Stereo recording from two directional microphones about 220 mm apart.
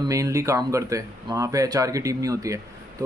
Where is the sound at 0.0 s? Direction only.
15° right (ahead or behind).